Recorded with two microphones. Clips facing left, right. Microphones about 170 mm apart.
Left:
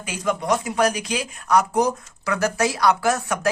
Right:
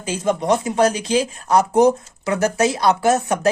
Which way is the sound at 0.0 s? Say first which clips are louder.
Right 4 dB; 25° right (ahead or behind).